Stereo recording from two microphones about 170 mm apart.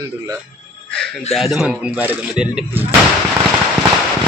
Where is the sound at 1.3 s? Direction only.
Centre (ahead or behind).